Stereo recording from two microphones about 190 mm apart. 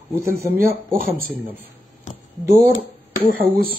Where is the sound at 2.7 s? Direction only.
50° left (ahead or behind).